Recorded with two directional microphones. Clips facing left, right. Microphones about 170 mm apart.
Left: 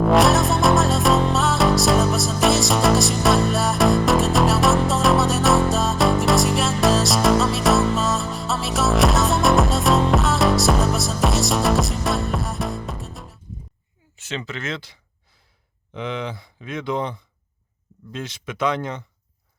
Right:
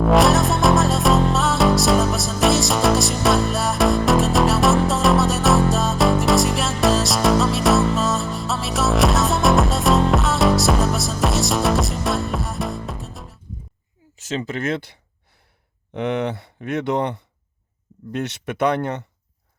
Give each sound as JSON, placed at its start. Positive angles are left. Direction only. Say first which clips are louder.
{"t": 0.0, "sound": "music", "louder": "right 1 dB", "side_deg": 0}
{"t": 14.2, "sound": "speech", "louder": "right 5 dB", "side_deg": -40}
{"t": 16.0, "sound": "speech", "louder": "right 6 dB", "side_deg": -65}